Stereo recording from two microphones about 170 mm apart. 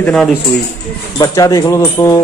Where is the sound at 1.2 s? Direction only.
20° left (ahead or behind).